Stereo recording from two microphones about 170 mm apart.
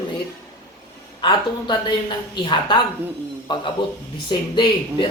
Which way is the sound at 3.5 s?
30° left (ahead or behind).